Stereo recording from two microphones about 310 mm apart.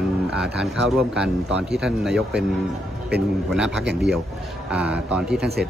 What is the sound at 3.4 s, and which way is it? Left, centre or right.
Speech, centre.